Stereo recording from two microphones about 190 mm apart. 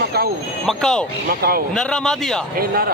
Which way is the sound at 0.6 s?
5° left (ahead or behind).